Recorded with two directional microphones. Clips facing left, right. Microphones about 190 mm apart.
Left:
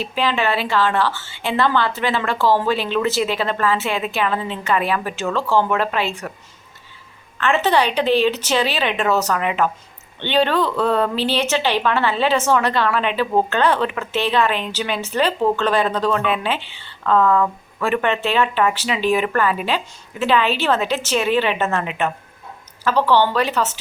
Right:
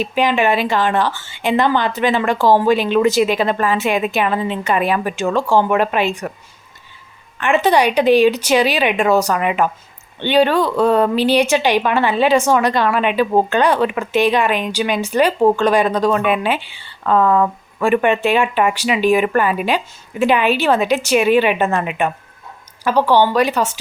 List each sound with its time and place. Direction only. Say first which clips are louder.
0.0 s a woman's voice: right 5 dB; 15° right (ahead or behind)
7.3 s a woman's voice: right 3 dB; 15° right (ahead or behind)